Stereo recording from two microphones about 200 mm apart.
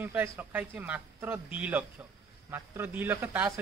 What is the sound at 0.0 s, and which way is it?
A man's voice, 10° right (ahead or behind).